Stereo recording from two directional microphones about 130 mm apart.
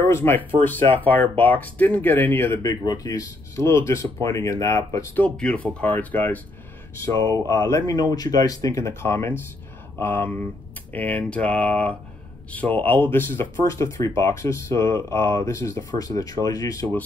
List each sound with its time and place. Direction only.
0.2 s speech: 15° left (ahead or behind)
2.9 s speech: 25° left (ahead or behind)
5.2 s speech: 10° left (ahead or behind)
7.4 s speech: 25° left (ahead or behind)